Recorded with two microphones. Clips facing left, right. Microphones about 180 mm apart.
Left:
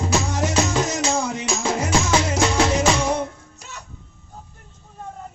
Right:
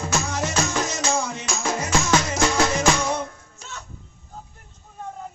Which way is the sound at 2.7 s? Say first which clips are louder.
Left 2 dB; 15° left (ahead or behind).